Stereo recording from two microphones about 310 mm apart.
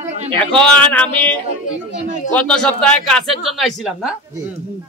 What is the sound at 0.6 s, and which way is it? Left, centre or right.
Speech, centre.